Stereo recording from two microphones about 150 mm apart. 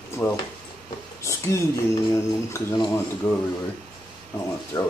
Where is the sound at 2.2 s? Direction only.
20° left (ahead or behind).